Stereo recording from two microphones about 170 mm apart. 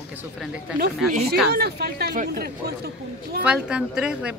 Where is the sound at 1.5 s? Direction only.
70° right (ahead or behind).